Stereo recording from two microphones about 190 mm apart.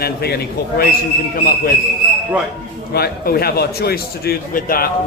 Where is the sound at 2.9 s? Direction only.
55° left (ahead or behind).